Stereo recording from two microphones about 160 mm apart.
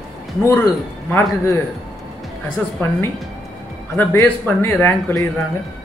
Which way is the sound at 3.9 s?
10° left (ahead or behind).